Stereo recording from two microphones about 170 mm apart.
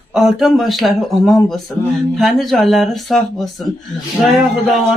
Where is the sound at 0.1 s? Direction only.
Centre (ahead or behind).